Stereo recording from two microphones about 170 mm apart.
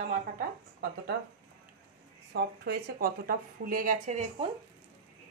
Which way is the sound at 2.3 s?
70° right (ahead or behind).